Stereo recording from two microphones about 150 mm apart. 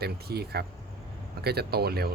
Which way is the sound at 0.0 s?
90° right.